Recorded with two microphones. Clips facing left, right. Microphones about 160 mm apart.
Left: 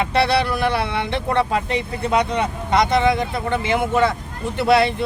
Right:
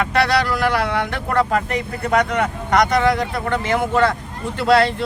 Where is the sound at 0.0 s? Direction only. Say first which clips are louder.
Even; 25° left (ahead or behind).